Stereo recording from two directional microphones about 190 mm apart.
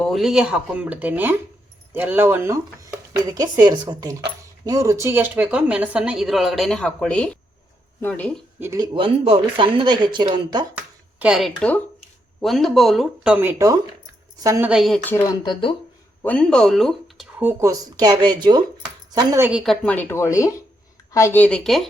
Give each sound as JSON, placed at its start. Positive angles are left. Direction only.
{"t": 0.0, "sound": "a woman's voice", "side_deg": 0}
{"t": 8.5, "sound": "speech", "side_deg": -15}
{"t": 9.0, "sound": "speech", "side_deg": -30}
{"t": 11.2, "sound": "a woman's voice", "side_deg": 0}
{"t": 14.7, "sound": "a woman's voice", "side_deg": 0}
{"t": 15.1, "sound": "speech", "side_deg": 20}
{"t": 16.2, "sound": "speech", "side_deg": 5}
{"t": 17.4, "sound": "a woman's voice", "side_deg": -15}
{"t": 19.5, "sound": "a woman's voice", "side_deg": 0}